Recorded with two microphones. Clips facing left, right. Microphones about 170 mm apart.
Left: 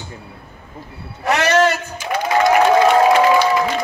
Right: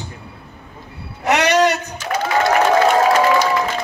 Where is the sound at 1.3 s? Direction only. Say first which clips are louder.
Even; 15° right (ahead or behind).